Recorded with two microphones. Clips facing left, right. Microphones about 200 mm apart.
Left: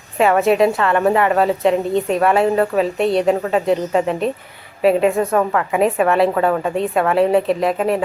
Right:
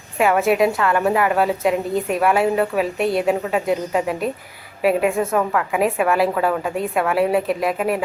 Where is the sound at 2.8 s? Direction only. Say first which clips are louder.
Left 3 dB; 30° left (ahead or behind).